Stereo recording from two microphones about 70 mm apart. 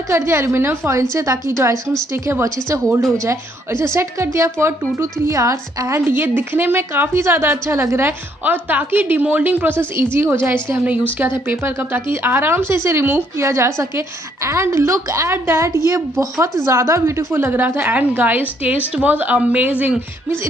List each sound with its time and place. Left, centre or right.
0.1 s a woman's voice: right
6.1 s speech: right
8.5 s a woman's voice: right
15.3 s a woman's voice: right